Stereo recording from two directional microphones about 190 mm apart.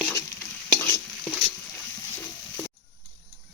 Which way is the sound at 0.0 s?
15° left (ahead or behind).